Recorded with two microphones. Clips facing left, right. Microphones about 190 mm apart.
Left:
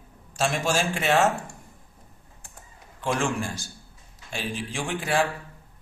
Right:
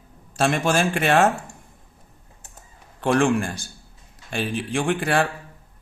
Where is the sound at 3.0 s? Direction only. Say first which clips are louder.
Right 7 dB; 60° right (ahead or behind).